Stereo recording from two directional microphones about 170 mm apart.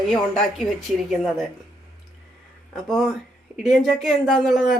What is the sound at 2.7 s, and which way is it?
Speech, centre (ahead or behind).